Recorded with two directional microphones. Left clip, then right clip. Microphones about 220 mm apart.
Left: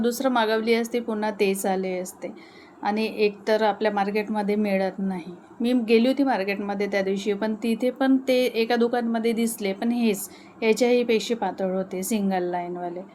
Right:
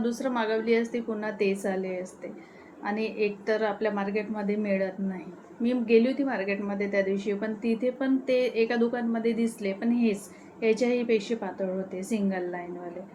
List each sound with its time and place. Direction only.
0.0 s a woman's voice: 50° left (ahead or behind)